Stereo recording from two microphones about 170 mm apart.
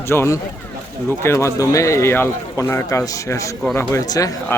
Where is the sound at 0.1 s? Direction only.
15° left (ahead or behind).